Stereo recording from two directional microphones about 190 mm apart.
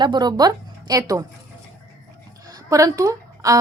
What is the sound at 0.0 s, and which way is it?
A woman's voice, 20° right (ahead or behind).